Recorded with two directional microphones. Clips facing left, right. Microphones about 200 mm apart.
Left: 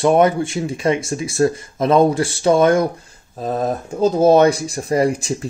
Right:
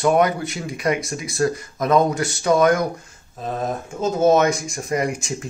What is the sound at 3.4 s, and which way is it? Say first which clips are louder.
Speech: left 5 dB; 40° left (ahead or behind).